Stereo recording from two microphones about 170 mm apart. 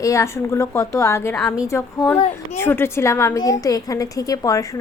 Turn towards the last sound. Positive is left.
turn(degrees=20)  # may be behind; listen again after turning